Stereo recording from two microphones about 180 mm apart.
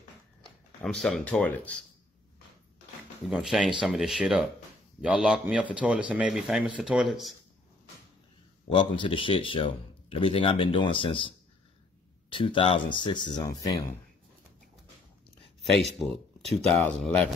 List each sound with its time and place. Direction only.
0.8 s a man's voice: 5° left (ahead or behind)
3.3 s a man's voice: 5° right (ahead or behind)
8.7 s speech: 25° left (ahead or behind)
16.0 s a man's voice: centre (ahead or behind)